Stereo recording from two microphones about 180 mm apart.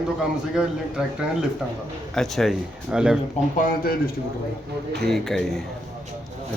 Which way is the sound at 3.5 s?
50° left (ahead or behind).